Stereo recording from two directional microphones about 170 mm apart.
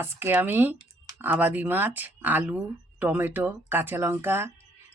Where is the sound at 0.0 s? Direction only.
15° right (ahead or behind).